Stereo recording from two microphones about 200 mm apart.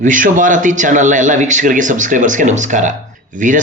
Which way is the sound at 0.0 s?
40° right (ahead or behind).